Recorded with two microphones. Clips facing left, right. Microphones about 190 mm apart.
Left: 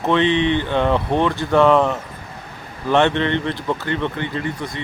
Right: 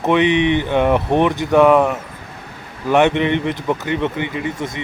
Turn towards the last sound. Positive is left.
turn(degrees=-20)  # may be behind; listen again after turning